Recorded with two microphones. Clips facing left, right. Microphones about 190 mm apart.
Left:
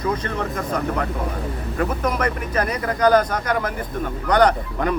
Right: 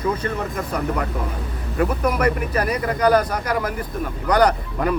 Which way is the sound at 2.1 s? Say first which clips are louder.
Right 3 dB; 10° right (ahead or behind).